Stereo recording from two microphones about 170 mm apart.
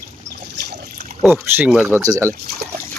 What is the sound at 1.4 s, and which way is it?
Speech, 10° right (ahead or behind).